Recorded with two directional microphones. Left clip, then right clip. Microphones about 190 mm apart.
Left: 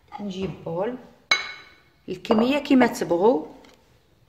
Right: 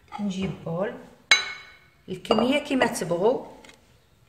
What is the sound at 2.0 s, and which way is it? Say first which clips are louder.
Speech: left 1 dB; 45° left (ahead or behind).